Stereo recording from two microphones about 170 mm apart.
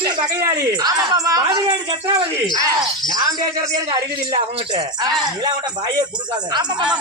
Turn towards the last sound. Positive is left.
turn(degrees=-25)  # may be behind; listen again after turning